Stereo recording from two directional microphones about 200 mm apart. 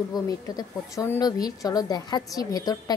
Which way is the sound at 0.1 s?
15° left (ahead or behind).